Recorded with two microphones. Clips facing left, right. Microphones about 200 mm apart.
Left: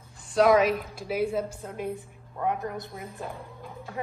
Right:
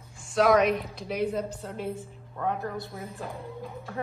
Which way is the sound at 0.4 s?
Centre (ahead or behind).